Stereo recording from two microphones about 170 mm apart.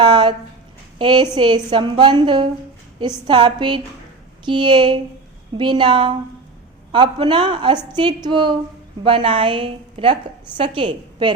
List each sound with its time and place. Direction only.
0.0 s a woman's voice: 25° right (ahead or behind)